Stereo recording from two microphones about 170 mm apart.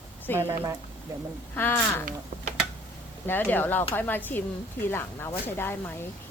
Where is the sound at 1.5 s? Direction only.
15° left (ahead or behind).